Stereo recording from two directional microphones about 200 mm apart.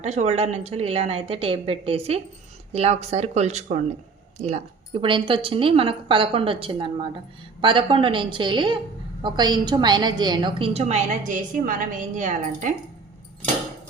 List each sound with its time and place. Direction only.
0.0 s a woman's voice: 35° right (ahead or behind)